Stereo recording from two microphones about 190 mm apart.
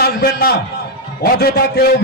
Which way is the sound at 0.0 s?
55° left (ahead or behind).